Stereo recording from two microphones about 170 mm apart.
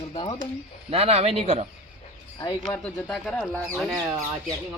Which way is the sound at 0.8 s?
35° right (ahead or behind).